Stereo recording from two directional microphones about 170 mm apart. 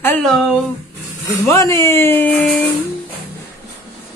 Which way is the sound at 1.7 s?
15° left (ahead or behind).